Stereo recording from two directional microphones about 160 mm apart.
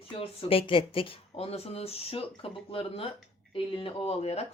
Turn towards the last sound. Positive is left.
turn(degrees=40)  # may be behind; listen again after turning